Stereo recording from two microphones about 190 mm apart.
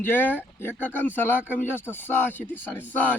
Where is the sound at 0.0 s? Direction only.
10° left (ahead or behind).